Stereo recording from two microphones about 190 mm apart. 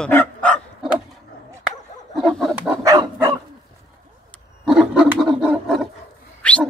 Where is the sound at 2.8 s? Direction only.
15° right (ahead or behind).